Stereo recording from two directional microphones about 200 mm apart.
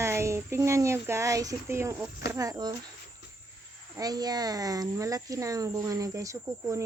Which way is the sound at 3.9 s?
20° right (ahead or behind).